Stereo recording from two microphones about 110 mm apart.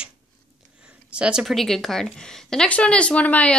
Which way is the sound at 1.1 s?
10° right (ahead or behind).